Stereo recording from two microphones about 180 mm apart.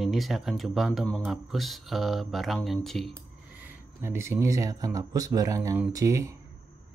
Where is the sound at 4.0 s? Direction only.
15° right (ahead or behind).